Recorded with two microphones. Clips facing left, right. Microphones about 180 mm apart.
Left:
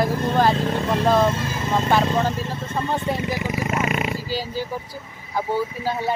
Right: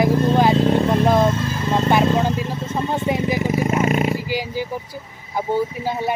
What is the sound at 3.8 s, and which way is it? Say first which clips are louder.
Roar: right 5 dB; 35° right (ahead or behind).